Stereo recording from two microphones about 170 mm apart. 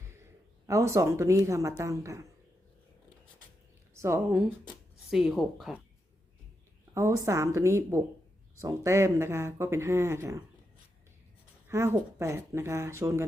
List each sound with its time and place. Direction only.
0.0 s a sound: 15° right (ahead or behind)
0.7 s speech: 15° right (ahead or behind)
3.9 s speech: 15° right (ahead or behind)
5.1 s speech: centre (ahead or behind)
6.9 s speech: 15° right (ahead or behind)
11.7 s speech: 15° right (ahead or behind)